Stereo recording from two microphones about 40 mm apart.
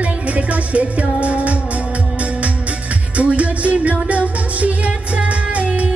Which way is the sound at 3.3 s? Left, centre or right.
Right.